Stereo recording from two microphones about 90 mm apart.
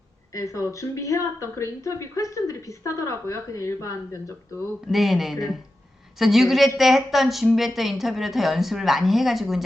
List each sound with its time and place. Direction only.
0.3 s speech: 35° left (ahead or behind)
4.9 s a woman's voice: centre (ahead or behind)